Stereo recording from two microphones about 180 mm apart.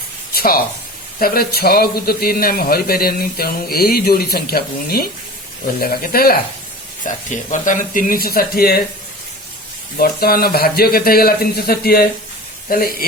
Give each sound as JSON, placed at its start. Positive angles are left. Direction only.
{"t": 0.3, "sound": "speech", "side_deg": 55}
{"t": 7.0, "sound": "speech", "side_deg": 45}
{"t": 10.0, "sound": "speech", "side_deg": 55}